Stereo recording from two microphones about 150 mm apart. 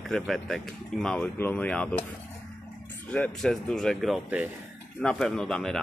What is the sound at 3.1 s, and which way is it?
Speech, 5° left (ahead or behind).